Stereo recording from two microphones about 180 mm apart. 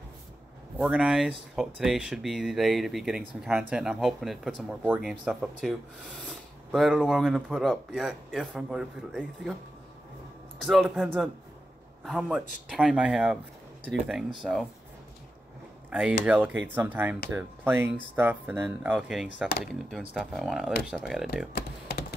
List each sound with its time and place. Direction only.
0.7 s speech: 5° right (ahead or behind)
10.6 s a man's voice: centre (ahead or behind)
15.9 s speech: 5° right (ahead or behind)
21.5 s computer keyboard: 60° left (ahead or behind)